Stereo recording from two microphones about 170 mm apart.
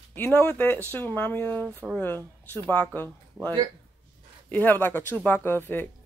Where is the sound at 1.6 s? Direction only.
10° right (ahead or behind).